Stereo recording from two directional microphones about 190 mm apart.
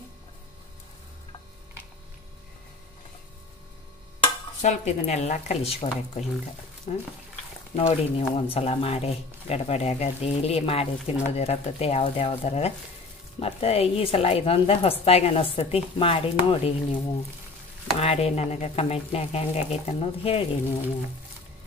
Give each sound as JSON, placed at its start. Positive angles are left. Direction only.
{"t": 4.6, "sound": "speech", "side_deg": 35}
{"t": 18.0, "sound": "speech", "side_deg": 35}